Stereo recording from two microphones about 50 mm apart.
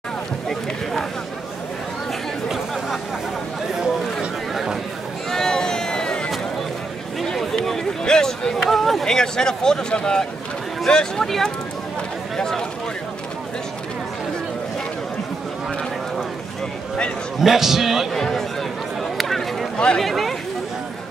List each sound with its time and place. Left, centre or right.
3.7 s chatter: centre
5.3 s a sound: centre
8.6 s speech: centre
17.4 s a man's voice: centre
18.1 s speech: centre
19.1 s chatter: centre
20.0 s speech: centre